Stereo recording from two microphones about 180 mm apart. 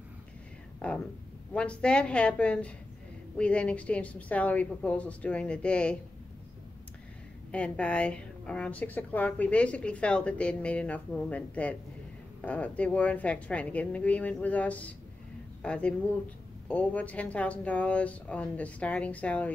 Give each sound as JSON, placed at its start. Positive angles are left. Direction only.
{"t": 0.7, "sound": "speech", "side_deg": 5}
{"t": 7.5, "sound": "speech", "side_deg": 5}